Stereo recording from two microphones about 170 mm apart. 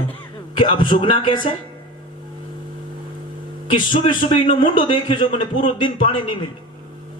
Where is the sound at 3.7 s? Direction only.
30° left (ahead or behind).